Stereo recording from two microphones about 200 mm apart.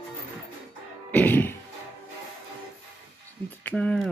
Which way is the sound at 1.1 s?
10° left (ahead or behind).